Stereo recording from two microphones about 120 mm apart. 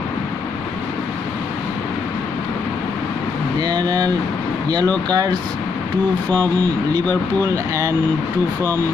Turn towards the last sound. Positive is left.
turn(degrees=-25)  # may be behind; listen again after turning